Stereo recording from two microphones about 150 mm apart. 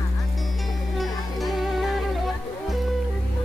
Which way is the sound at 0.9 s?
Centre (ahead or behind).